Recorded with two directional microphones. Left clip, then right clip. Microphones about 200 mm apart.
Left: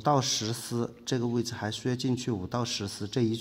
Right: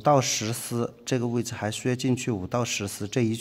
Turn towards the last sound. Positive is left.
turn(degrees=-30)  # may be behind; listen again after turning